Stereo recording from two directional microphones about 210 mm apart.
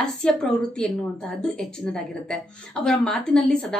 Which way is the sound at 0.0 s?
5° left (ahead or behind).